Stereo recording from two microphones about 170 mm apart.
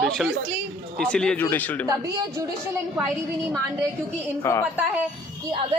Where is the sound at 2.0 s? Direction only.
20° right (ahead or behind).